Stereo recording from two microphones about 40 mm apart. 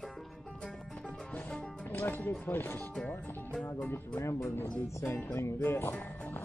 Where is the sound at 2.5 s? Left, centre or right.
Left.